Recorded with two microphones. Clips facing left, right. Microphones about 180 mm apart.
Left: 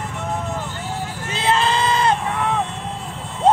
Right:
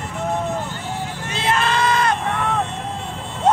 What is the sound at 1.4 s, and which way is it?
Crowd, 25° left (ahead or behind).